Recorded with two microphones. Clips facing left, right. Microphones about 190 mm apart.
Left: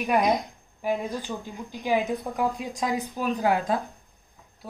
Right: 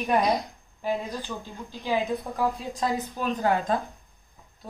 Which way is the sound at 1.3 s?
25° left (ahead or behind).